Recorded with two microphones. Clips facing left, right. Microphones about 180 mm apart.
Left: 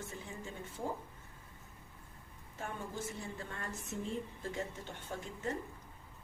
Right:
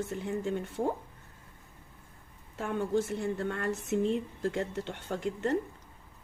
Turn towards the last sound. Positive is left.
turn(degrees=-75)  # may be behind; listen again after turning